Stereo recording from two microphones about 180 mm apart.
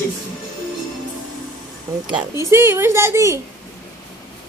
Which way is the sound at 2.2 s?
15° right (ahead or behind).